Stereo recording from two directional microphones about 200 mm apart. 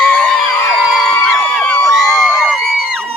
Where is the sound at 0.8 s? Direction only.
Centre (ahead or behind).